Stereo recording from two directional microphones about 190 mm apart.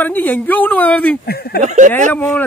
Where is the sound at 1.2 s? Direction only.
55° left (ahead or behind).